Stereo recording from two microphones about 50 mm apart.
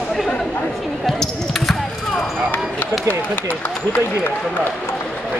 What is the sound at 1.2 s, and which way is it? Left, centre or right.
Basketball bounce, centre.